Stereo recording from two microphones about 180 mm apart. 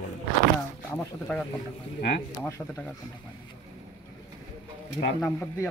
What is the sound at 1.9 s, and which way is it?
Speech, 60° left (ahead or behind).